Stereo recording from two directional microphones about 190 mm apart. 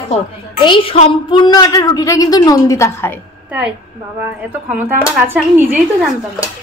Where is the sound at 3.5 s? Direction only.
5° right (ahead or behind).